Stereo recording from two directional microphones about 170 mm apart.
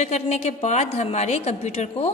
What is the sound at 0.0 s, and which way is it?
A woman's voice, 40° left (ahead or behind).